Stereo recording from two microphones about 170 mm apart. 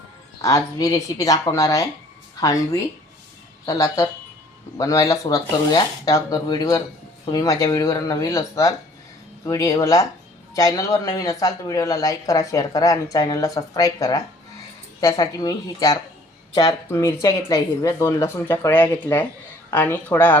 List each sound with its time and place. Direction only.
0.4 s speech: 20° left (ahead or behind)